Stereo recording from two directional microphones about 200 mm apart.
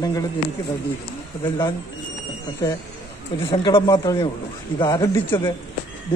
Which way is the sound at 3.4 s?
25° left (ahead or behind).